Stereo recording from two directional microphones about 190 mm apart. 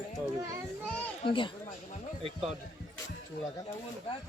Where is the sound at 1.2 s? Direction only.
25° left (ahead or behind).